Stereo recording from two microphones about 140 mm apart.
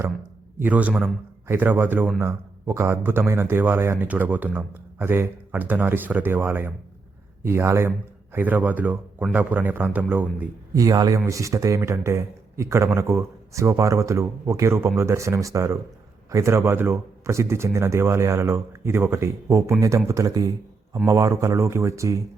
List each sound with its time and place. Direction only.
0.6 s a man's voice: 10° right (ahead or behind)
10.8 s speech: 25° right (ahead or behind)